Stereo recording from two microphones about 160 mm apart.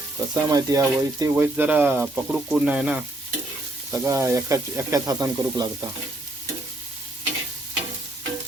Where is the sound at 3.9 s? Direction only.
20° right (ahead or behind).